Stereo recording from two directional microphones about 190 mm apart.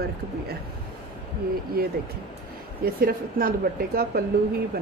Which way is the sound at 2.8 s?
50° right (ahead or behind).